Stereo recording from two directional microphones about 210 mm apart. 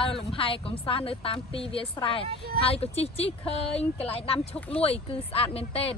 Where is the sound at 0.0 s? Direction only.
25° left (ahead or behind).